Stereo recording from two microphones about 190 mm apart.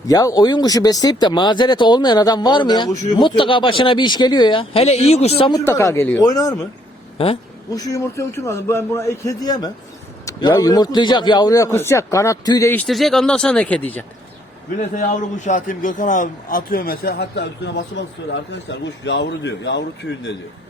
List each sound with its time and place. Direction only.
0.1 s speech: 20° left (ahead or behind)
7.8 s a man's voice: 20° left (ahead or behind)
14.8 s a man's voice: 40° left (ahead or behind); by 19.8 s 70° left (ahead or behind)